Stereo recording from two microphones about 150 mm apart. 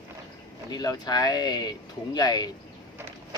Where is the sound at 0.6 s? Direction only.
25° left (ahead or behind).